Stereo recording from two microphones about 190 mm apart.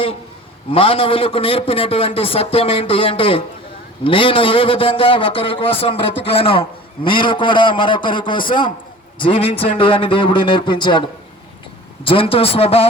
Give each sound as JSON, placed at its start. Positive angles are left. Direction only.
{"t": 0.7, "sound": "a man's voice", "side_deg": 30}
{"t": 12.0, "sound": "speech", "side_deg": 30}